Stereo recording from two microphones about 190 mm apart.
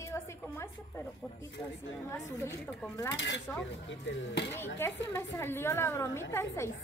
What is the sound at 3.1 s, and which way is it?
Speech, 65° left (ahead or behind).